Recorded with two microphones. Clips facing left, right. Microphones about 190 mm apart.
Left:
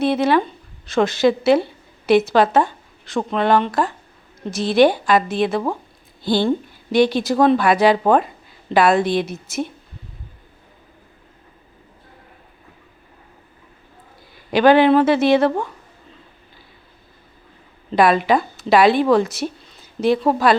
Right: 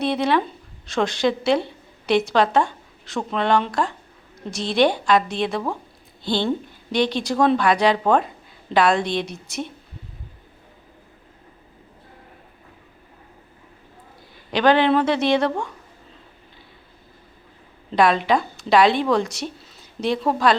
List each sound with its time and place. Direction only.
0.0 s a woman's voice: centre (ahead or behind)
14.5 s a woman's voice: 10° left (ahead or behind)
17.9 s a woman's voice: 5° left (ahead or behind)